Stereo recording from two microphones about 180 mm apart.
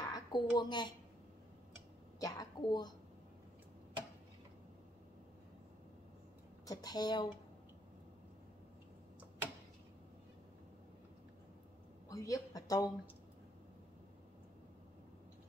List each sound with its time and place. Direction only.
0.1 s a woman's voice: 25° left (ahead or behind)
2.1 s a woman's voice: 20° left (ahead or behind)
6.6 s a woman's voice: 20° left (ahead or behind)
12.1 s speech: 20° left (ahead or behind)